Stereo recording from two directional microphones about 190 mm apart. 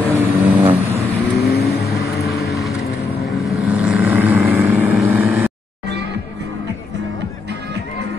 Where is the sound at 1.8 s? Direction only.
60° left (ahead or behind).